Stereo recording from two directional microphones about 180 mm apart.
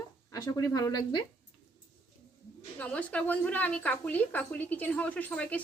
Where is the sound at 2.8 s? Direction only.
5° left (ahead or behind).